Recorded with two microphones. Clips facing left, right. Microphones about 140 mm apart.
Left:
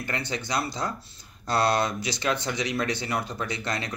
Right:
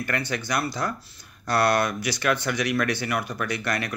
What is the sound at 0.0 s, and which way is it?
Speech, 20° left (ahead or behind).